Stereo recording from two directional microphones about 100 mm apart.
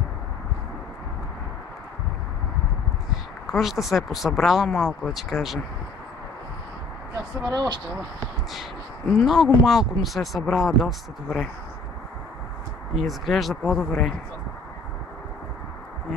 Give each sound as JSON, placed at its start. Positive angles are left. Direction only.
{"t": 3.4, "sound": "speech", "side_deg": 0}
{"t": 7.4, "sound": "speech", "side_deg": -40}
{"t": 9.2, "sound": "speech", "side_deg": 0}
{"t": 12.9, "sound": "speech", "side_deg": 0}